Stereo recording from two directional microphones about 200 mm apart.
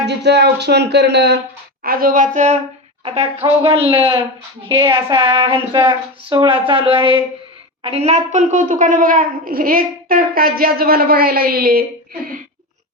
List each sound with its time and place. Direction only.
0.0 s speech: 60° right (ahead or behind); by 2.6 s 35° right (ahead or behind)
3.4 s a woman's voice: 25° right (ahead or behind); by 11.9 s 50° right (ahead or behind)